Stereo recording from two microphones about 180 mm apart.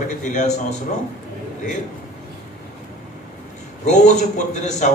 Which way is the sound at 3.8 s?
40° left (ahead or behind).